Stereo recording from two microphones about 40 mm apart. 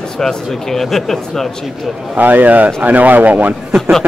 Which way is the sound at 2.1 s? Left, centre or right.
Right.